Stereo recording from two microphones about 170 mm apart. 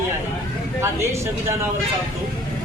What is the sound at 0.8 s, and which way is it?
Speech, 15° right (ahead or behind).